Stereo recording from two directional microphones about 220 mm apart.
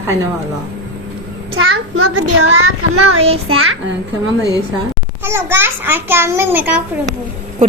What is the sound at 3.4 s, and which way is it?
Speech, 70° right (ahead or behind).